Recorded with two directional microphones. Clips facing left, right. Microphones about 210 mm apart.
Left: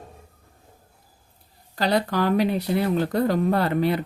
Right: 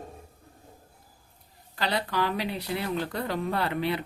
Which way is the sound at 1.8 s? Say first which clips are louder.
Left 6 dB; 45° left (ahead or behind).